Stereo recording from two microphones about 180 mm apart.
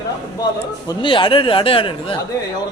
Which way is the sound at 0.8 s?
30° left (ahead or behind).